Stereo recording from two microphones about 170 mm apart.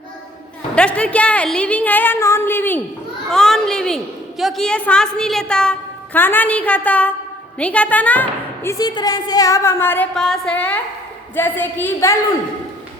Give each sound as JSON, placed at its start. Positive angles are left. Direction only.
{"t": 0.8, "sound": "a woman's voice", "side_deg": 5}
{"t": 8.8, "sound": "a woman's voice", "side_deg": 20}